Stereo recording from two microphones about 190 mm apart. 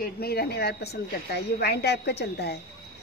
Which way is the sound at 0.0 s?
55° left (ahead or behind).